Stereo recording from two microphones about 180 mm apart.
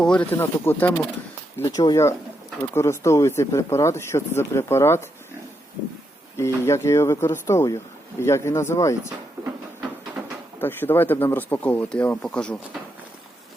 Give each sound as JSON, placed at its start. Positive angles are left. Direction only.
{"t": 0.0, "sound": "speech", "side_deg": 5}
{"t": 1.6, "sound": "speech", "side_deg": 25}
{"t": 6.3, "sound": "speech", "side_deg": 15}
{"t": 10.2, "sound": "a sound", "side_deg": -10}
{"t": 10.6, "sound": "speech", "side_deg": 10}